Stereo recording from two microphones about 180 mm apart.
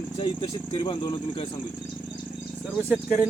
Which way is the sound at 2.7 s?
5° right (ahead or behind).